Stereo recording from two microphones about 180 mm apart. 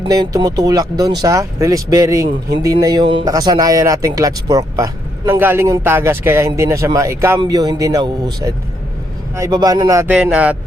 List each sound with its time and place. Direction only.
0.0 s a man's voice: 20° right (ahead or behind)